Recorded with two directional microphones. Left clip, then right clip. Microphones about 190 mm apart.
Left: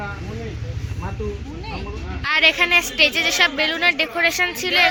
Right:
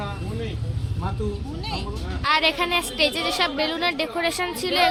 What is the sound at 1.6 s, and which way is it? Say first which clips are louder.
Speech: right 4 dB; 25° right (ahead or behind).